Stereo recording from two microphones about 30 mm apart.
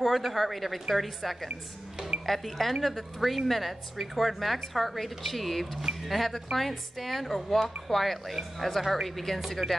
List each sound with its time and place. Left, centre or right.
0.0 s a woman's voice: centre
9.6 s a woman's voice: right